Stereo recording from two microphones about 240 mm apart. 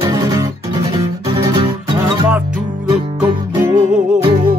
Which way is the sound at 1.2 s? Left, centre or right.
Centre.